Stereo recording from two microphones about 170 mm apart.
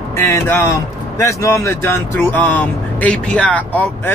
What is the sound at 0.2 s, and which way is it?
Speech, 15° left (ahead or behind).